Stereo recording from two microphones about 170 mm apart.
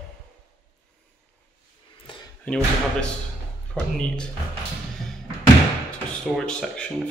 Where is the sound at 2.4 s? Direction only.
5° left (ahead or behind).